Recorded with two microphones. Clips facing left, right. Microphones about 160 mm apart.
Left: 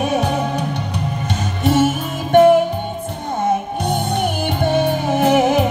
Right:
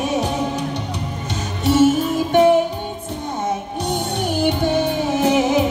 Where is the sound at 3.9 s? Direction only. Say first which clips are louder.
Left 2 dB; 55° left (ahead or behind).